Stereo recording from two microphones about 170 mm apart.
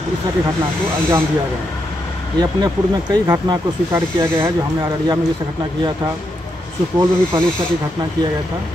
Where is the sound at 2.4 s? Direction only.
20° right (ahead or behind).